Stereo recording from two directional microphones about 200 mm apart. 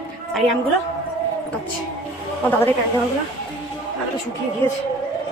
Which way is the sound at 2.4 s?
10° left (ahead or behind).